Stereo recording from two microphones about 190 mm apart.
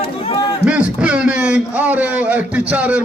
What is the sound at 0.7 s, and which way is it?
A man's voice, 5° right (ahead or behind).